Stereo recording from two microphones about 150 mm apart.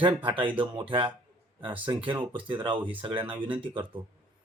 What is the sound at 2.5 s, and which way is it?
Speech, 35° right (ahead or behind).